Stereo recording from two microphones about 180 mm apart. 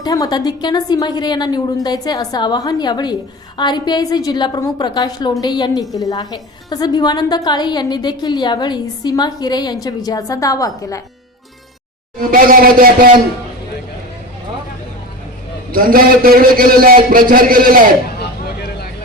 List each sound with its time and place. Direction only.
0.0 s a woman's voice: 20° left (ahead or behind)
12.2 s a man's voice: 50° right (ahead or behind)
15.7 s a man's voice: 55° right (ahead or behind)
18.2 s vehicle: 65° left (ahead or behind)